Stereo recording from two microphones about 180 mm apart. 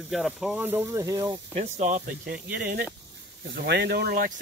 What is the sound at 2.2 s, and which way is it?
Speech, 55° right (ahead or behind).